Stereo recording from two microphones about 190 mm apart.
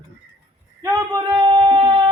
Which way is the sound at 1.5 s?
25° right (ahead or behind).